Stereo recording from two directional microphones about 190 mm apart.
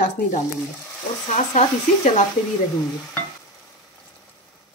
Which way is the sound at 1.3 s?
35° left (ahead or behind).